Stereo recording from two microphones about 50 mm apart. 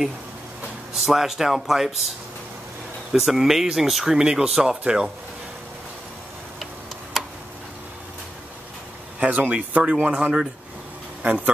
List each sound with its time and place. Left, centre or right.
0.9 s speech: centre
3.1 s speech: centre
7.2 s tick: centre
9.2 s speech: right